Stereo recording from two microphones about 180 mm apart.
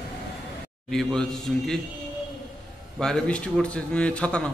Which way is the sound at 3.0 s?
5° left (ahead or behind).